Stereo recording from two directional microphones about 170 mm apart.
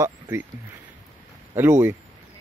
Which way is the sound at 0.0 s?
15° right (ahead or behind).